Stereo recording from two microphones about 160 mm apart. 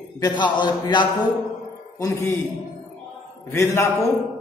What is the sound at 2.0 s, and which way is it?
Speech, 20° left (ahead or behind).